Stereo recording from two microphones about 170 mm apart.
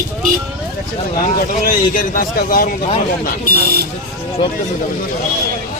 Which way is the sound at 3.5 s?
65° right (ahead or behind).